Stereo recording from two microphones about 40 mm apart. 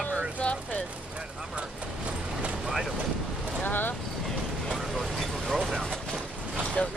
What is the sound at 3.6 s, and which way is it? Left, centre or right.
Vehicle, left.